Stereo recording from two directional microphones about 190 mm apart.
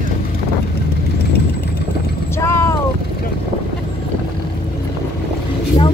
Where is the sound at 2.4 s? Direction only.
15° left (ahead or behind).